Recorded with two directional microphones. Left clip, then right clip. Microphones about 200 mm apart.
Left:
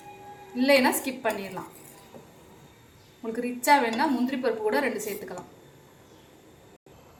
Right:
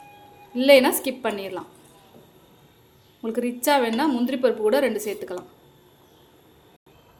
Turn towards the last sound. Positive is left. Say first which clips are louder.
# right 5 dB
turn(degrees=-60)  # may be behind; listen again after turning